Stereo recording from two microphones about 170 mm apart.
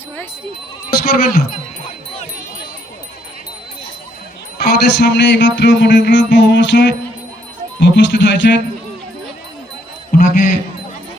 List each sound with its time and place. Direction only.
1.1 s speech: 60° left (ahead or behind)
4.5 s music: 70° left (ahead or behind); by 8.6 s 90° left
10.1 s a sound: 55° left (ahead or behind)